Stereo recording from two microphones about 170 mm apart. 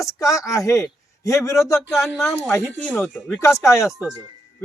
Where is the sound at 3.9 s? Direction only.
5° right (ahead or behind).